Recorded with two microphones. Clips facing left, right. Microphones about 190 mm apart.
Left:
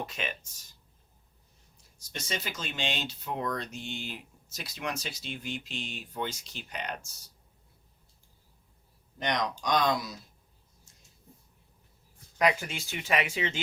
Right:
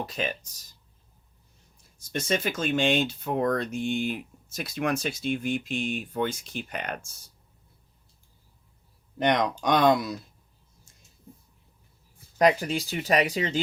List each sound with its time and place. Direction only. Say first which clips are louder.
0.0 s speech: right 5 dB; 35° right (ahead or behind)
2.0 s speech: right 9 dB; 55° right (ahead or behind)
9.1 s speech: right 7 dB; 55° right (ahead or behind)
12.4 s speech: right 6 dB; 35° right (ahead or behind)